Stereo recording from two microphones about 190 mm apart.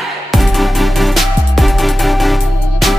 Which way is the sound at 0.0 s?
Centre (ahead or behind).